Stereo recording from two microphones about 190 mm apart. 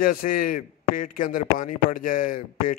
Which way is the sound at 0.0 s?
50° left (ahead or behind).